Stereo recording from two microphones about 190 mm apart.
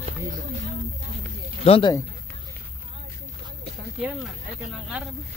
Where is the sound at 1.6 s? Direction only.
30° left (ahead or behind).